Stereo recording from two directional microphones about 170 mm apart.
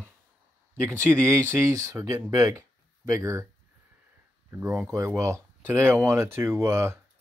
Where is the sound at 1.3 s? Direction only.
15° right (ahead or behind).